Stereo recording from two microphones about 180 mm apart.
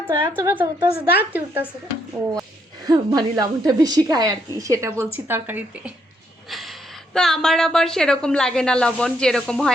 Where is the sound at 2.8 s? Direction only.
20° right (ahead or behind).